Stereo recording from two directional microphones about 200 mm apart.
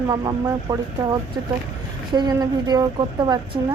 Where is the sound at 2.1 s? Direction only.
20° right (ahead or behind).